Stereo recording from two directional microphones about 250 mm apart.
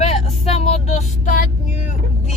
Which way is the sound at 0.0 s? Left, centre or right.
Left.